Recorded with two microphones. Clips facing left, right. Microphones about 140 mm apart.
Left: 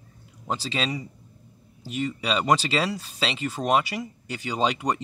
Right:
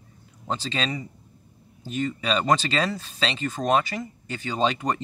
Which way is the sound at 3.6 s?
10° left (ahead or behind).